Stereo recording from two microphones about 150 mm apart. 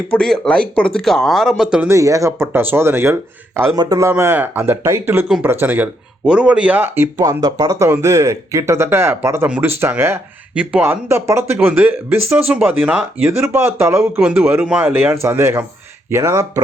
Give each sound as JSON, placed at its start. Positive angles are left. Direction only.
{"t": 0.1, "sound": "speech", "side_deg": 5}
{"t": 1.9, "sound": "speech", "side_deg": -20}
{"t": 4.1, "sound": "speech", "side_deg": -15}